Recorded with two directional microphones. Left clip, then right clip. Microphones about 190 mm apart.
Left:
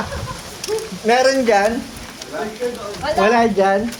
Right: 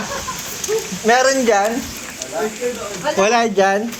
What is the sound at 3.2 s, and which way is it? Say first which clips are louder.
Speech: left 1 dB; 15° right (ahead or behind).